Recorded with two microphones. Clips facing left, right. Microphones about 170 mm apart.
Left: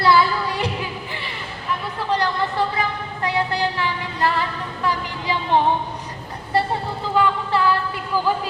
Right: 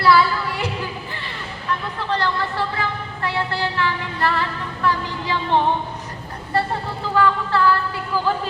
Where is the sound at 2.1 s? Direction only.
15° left (ahead or behind).